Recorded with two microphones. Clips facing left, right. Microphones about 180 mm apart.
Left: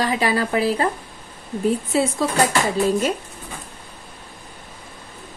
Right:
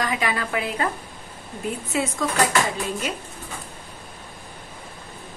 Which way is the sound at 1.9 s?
30° left (ahead or behind).